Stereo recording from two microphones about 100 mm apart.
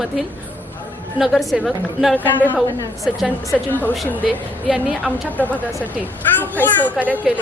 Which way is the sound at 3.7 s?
15° left (ahead or behind).